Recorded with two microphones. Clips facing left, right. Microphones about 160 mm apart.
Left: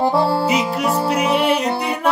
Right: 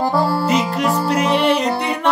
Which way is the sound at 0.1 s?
25° left (ahead or behind).